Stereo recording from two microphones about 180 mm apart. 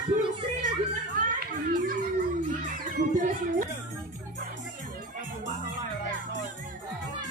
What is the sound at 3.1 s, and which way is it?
Music, 45° right (ahead or behind).